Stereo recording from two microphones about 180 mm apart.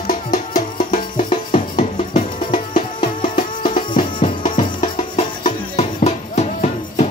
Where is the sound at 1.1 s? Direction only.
45° left (ahead or behind).